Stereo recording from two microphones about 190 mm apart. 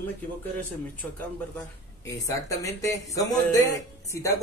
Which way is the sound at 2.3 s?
15° left (ahead or behind).